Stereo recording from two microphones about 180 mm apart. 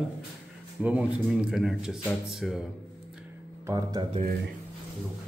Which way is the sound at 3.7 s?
20° right (ahead or behind).